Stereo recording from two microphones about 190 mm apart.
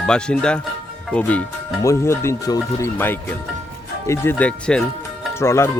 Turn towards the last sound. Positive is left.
turn(degrees=15)  # may be behind; listen again after turning